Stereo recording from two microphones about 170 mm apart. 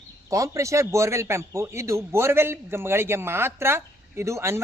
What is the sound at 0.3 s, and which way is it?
A man's voice, 20° right (ahead or behind).